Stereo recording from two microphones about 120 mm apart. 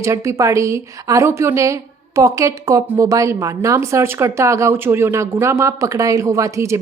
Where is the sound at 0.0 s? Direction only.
25° right (ahead or behind).